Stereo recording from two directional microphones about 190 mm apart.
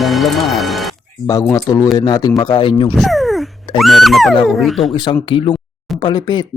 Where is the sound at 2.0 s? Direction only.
20° left (ahead or behind).